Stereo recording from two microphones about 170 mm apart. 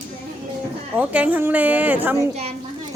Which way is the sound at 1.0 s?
10° right (ahead or behind).